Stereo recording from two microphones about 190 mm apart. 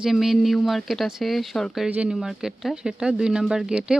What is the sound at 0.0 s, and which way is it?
Speech, centre (ahead or behind).